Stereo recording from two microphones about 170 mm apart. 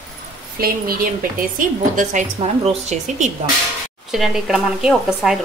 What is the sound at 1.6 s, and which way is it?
A woman's voice, 45° right (ahead or behind).